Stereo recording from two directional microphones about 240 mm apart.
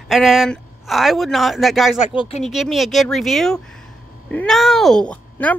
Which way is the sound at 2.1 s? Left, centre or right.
Left.